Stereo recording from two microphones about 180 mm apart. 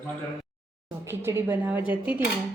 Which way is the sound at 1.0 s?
15° right (ahead or behind).